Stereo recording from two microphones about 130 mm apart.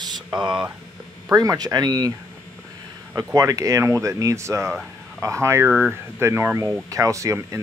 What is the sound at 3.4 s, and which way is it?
Speech, 25° right (ahead or behind).